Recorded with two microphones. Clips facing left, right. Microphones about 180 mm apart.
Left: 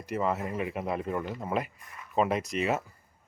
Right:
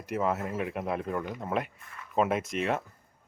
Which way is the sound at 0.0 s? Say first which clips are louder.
Even; centre (ahead or behind).